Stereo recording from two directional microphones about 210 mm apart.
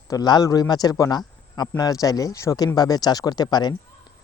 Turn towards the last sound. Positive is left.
turn(degrees=20)  # may be behind; listen again after turning